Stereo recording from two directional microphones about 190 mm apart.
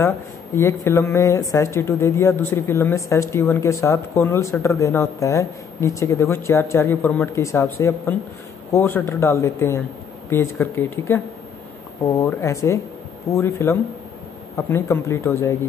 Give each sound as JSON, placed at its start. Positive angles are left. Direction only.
{"t": 0.6, "sound": "speech", "side_deg": 15}
{"t": 12.2, "sound": "speech", "side_deg": 15}